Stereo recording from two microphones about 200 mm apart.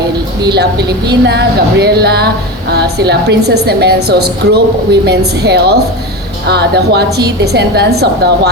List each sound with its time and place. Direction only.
0.5 s a woman's voice: 55° right (ahead or behind)